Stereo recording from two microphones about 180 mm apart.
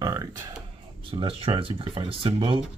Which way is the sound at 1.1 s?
30° right (ahead or behind).